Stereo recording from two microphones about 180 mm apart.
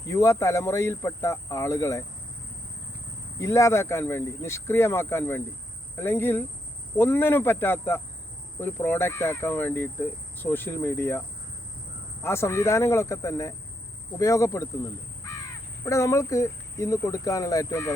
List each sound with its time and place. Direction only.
0.0 s speech: 15° left (ahead or behind)
3.3 s speech: 15° left (ahead or behind)
12.2 s speech: 15° left (ahead or behind)
15.8 s speech: 15° left (ahead or behind)